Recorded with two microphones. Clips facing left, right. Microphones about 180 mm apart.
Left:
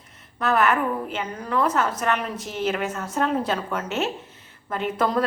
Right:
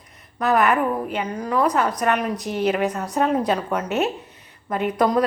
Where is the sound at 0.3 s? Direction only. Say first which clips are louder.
Right 2 dB; 15° right (ahead or behind).